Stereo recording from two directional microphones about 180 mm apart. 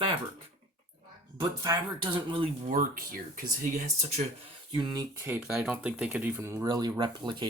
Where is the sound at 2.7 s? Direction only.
50° right (ahead or behind); by 4.2 s 35° right (ahead or behind).